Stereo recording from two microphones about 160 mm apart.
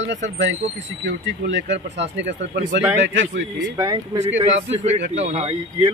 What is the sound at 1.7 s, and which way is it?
Speech, 90° right.